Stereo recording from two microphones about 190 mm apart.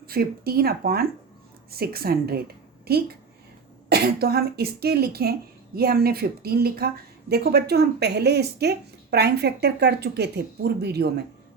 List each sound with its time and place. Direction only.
0.1 s speech: 55° right (ahead or behind)